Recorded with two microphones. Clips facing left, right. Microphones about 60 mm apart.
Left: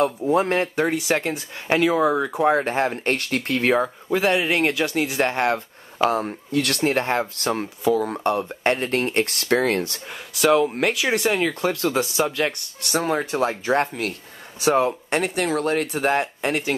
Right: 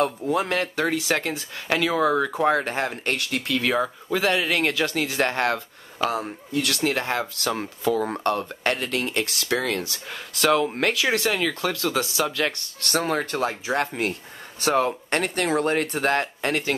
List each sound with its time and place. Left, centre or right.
0.3 s speech: left
0.8 s speech: centre
2.5 s speech: left
4.1 s speech: left
5.9 s speech: left
6.5 s speech: left
6.8 s speech: left
8.1 s speech: centre; by 10.0 s left
10.0 s speech: centre
14.6 s speech: centre
16.1 s speech: centre